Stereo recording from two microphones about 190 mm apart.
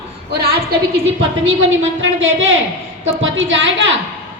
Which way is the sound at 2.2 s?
85° right.